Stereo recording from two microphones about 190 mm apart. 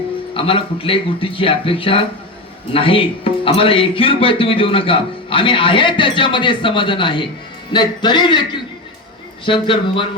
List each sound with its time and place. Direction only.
0.3 s speech: 30° left (ahead or behind)
9.5 s speech: 25° left (ahead or behind)